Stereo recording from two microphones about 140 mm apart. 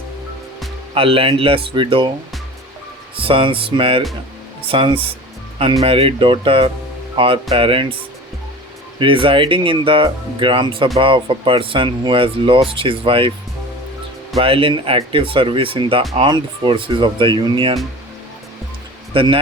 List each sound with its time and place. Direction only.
0.9 s speech: 40° right (ahead or behind)
3.2 s speech: 40° right (ahead or behind)
9.0 s speech: 40° right (ahead or behind)
14.3 s speech: 40° right (ahead or behind)
19.1 s speech: 40° right (ahead or behind)